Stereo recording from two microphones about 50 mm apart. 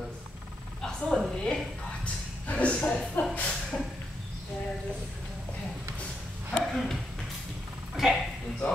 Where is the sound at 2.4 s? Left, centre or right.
Left.